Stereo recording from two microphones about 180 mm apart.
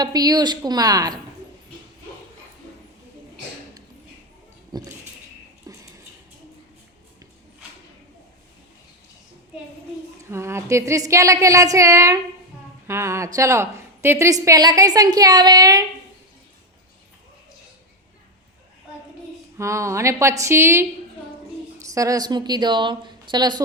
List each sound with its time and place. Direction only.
0.0 s a woman's voice: 20° right (ahead or behind)
5.7 s a sound: 20° right (ahead or behind)
10.2 s a woman's voice: 15° right (ahead or behind)
19.5 s a woman's voice: 15° right (ahead or behind)